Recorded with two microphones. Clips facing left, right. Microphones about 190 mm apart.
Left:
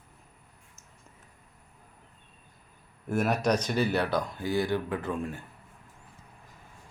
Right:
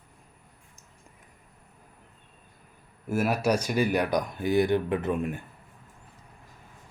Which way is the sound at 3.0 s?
5° right (ahead or behind).